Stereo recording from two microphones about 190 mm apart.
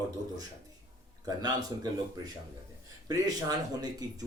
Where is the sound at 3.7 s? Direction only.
20° right (ahead or behind).